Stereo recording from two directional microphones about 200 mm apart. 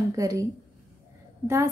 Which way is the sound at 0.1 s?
15° right (ahead or behind).